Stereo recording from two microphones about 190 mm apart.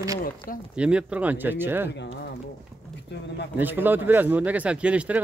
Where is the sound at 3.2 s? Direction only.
60° left (ahead or behind).